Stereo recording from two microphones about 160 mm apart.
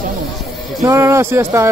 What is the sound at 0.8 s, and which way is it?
Speech, 15° right (ahead or behind).